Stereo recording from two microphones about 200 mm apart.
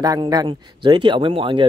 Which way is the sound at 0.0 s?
20° right (ahead or behind).